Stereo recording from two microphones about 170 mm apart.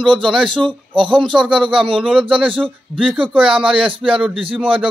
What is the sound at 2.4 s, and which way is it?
Speech, 30° right (ahead or behind).